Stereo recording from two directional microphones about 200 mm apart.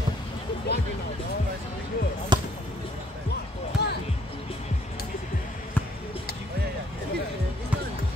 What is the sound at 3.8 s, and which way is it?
Music, 55° left (ahead or behind).